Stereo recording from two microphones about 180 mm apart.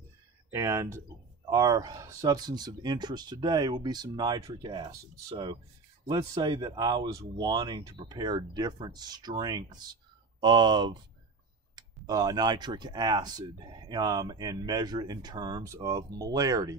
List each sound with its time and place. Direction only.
0.5 s speech: 15° right (ahead or behind)